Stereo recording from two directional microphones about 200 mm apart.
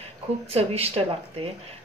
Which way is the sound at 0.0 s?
30° right (ahead or behind).